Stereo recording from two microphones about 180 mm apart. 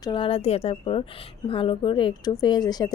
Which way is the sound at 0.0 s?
30° left (ahead or behind).